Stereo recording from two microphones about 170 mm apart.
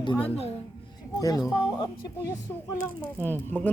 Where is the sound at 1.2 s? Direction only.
20° left (ahead or behind).